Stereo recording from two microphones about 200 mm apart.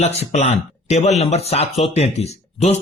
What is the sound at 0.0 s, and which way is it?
Speech, 35° left (ahead or behind).